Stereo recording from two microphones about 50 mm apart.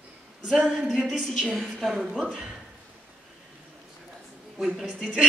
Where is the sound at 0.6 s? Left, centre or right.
Centre.